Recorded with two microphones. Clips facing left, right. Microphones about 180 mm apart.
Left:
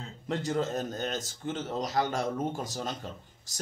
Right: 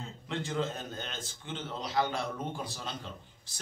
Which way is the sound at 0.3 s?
40° left (ahead or behind).